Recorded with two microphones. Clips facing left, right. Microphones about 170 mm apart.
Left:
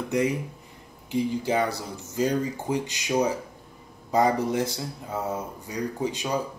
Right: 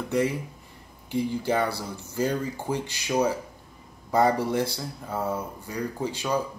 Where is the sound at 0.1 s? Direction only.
15° left (ahead or behind).